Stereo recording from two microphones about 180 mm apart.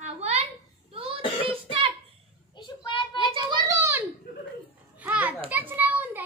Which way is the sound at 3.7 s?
15° right (ahead or behind).